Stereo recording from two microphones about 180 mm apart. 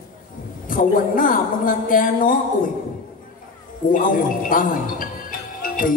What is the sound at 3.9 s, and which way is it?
A woman's voice, 50° left (ahead or behind).